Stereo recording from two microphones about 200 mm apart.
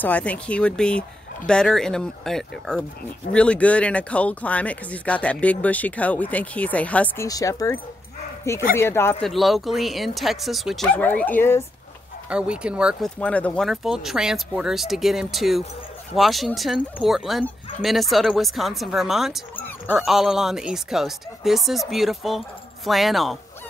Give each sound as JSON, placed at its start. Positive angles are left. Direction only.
{"t": 0.0, "sound": "speech", "side_deg": 5}
{"t": 7.2, "sound": "speech", "side_deg": 15}
{"t": 9.2, "sound": "speech", "side_deg": 0}
{"t": 12.3, "sound": "speech", "side_deg": -5}
{"t": 13.2, "sound": "speech", "side_deg": 5}